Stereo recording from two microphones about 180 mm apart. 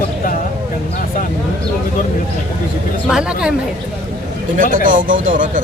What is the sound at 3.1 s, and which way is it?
Speech, 5° right (ahead or behind).